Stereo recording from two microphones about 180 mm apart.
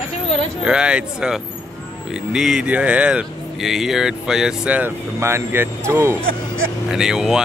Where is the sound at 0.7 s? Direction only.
5° right (ahead or behind).